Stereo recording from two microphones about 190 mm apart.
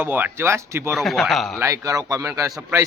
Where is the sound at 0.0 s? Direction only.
10° right (ahead or behind).